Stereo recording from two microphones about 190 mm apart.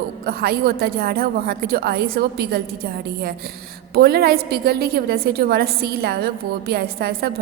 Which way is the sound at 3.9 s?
55° right (ahead or behind).